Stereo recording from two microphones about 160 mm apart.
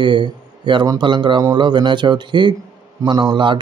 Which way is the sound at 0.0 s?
30° right (ahead or behind).